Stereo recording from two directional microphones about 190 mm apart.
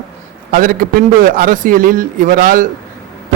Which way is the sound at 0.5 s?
45° right (ahead or behind).